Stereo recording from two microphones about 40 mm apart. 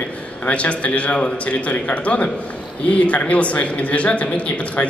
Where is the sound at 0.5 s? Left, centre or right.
Left.